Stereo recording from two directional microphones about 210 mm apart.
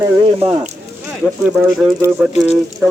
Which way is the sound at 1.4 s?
5° right (ahead or behind).